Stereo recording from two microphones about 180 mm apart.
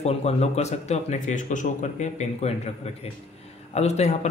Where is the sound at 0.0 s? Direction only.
35° left (ahead or behind).